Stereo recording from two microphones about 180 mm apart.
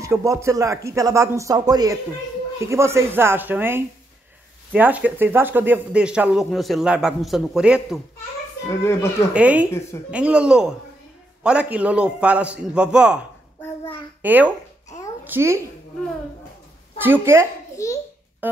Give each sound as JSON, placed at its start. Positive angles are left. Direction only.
{"t": 0.0, "sound": "a man's voice", "side_deg": -15}
{"t": 8.6, "sound": "speech", "side_deg": 15}
{"t": 9.3, "sound": "speech", "side_deg": -10}
{"t": 9.7, "sound": "speech", "side_deg": 15}
{"t": 10.1, "sound": "speech", "side_deg": -5}
{"t": 14.2, "sound": "a child's voice", "side_deg": -10}
{"t": 17.0, "sound": "speech", "side_deg": -10}
{"t": 17.7, "sound": "babbling", "side_deg": 15}
{"t": 18.4, "sound": "music", "side_deg": -10}